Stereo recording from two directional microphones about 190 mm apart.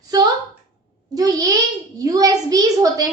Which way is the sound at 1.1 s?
20° right (ahead or behind).